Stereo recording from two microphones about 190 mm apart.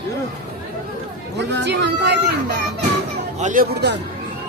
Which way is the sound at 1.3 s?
65° right (ahead or behind).